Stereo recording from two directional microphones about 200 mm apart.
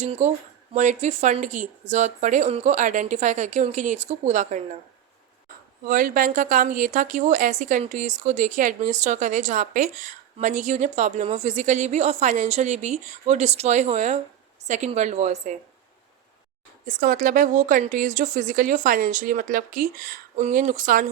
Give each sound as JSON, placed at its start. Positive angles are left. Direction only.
{"t": 0.0, "sound": "a woman's voice", "side_deg": -35}
{"t": 5.9, "sound": "a woman's voice", "side_deg": -40}
{"t": 16.8, "sound": "a woman's voice", "side_deg": -45}